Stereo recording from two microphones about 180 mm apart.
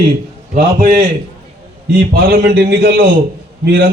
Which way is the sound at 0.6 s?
55° right (ahead or behind).